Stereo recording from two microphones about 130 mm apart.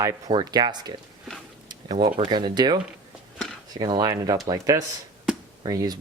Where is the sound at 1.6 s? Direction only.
35° right (ahead or behind).